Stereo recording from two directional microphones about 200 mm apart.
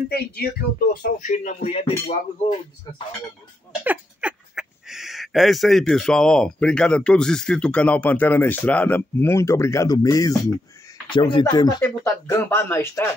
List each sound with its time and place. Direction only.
0.1 s speech: 50° left (ahead or behind); by 2.1 s 30° left (ahead or behind)
3.8 s speech: 5° right (ahead or behind); by 13.1 s 10° left (ahead or behind)